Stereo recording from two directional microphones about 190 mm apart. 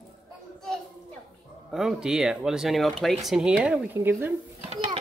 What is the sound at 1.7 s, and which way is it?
Speech, 5° right (ahead or behind).